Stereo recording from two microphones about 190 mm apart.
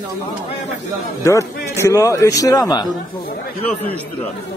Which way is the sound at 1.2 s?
15° left (ahead or behind).